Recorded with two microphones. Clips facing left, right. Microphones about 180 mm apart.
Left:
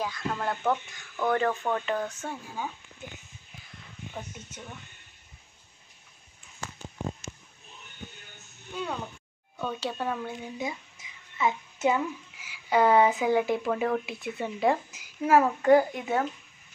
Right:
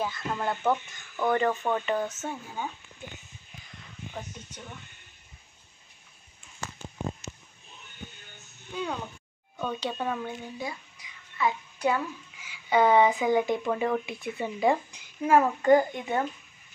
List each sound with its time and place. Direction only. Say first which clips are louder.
0.0 s speech: right 1 dB; centre (ahead or behind)
8.7 s speech: right 1 dB; centre (ahead or behind)
10.6 s music: left 2 dB; 20° left (ahead or behind)
12.4 s speech: right 1 dB; 5° left (ahead or behind)